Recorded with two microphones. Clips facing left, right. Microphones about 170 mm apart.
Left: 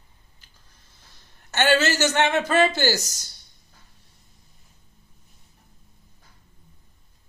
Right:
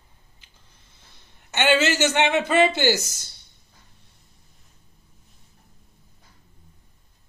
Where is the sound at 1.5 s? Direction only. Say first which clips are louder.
Even; 15° right (ahead or behind).